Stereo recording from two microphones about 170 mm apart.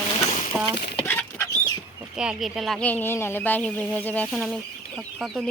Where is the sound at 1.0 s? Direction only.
15° left (ahead or behind).